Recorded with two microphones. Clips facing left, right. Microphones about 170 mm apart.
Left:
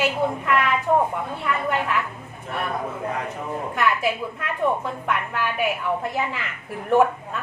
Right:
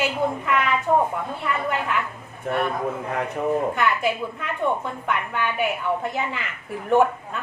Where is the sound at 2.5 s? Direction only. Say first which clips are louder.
Right 6 dB; 60° right (ahead or behind).